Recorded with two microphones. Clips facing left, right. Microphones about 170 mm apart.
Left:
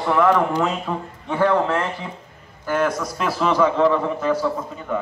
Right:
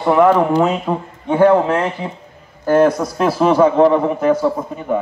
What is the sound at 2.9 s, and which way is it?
Speech, 30° right (ahead or behind).